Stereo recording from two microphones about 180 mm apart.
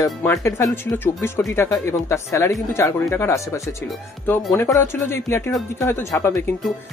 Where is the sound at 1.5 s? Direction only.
15° left (ahead or behind).